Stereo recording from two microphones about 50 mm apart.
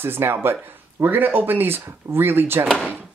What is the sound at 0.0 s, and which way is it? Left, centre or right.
Speech, right.